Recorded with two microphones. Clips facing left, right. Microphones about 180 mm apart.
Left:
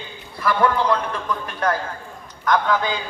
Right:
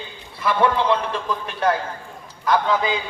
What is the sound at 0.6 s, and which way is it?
A man's voice, 25° right (ahead or behind).